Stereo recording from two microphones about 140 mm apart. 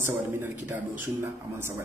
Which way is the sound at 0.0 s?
15° right (ahead or behind).